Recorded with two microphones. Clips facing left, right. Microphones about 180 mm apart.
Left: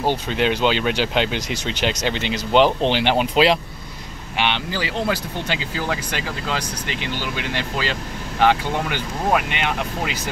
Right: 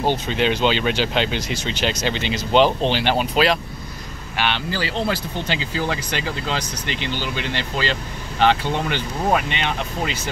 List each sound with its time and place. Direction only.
0.0 s speech: 10° left (ahead or behind)